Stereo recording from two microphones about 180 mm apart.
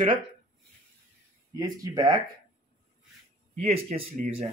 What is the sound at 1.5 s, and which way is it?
Speech, 20° right (ahead or behind).